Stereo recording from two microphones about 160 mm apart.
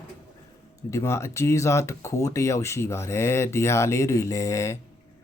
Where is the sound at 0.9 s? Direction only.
20° left (ahead or behind).